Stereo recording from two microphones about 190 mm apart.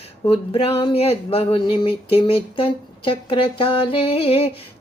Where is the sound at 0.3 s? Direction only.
25° left (ahead or behind).